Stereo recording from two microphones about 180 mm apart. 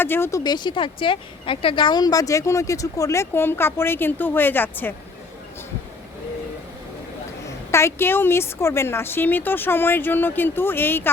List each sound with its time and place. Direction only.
0.0 s speech: 10° left (ahead or behind)
7.4 s speech: 15° left (ahead or behind)